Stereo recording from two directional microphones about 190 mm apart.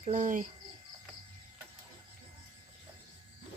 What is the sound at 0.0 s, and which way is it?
Speech, 40° right (ahead or behind).